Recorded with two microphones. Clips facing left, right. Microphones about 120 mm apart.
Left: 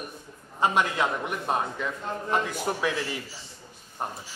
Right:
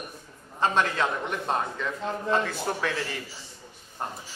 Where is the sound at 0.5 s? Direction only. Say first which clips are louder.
Even; 15° left (ahead or behind).